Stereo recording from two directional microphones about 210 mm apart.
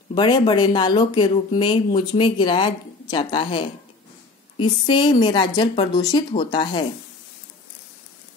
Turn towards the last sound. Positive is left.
turn(degrees=20)  # may be behind; listen again after turning